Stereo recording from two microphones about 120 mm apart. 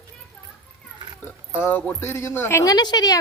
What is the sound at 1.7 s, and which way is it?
Speech, 15° left (ahead or behind).